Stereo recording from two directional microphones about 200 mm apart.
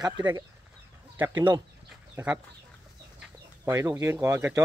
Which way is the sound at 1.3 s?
25° right (ahead or behind).